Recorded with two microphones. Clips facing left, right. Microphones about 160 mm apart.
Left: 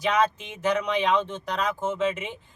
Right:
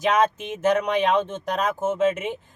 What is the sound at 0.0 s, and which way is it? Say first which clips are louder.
Speech: right 3 dB; 50° right (ahead or behind).